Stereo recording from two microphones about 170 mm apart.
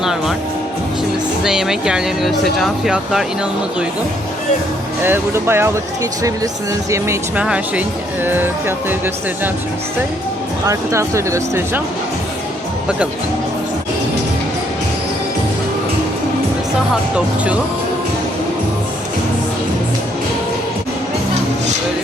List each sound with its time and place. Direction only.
0.0 s speech: 5° right (ahead or behind)
1.5 s speech: 5° right (ahead or behind)
5.0 s speech: 15° right (ahead or behind)
6.9 s speech: 15° right (ahead or behind)
10.7 s speech: 15° right (ahead or behind)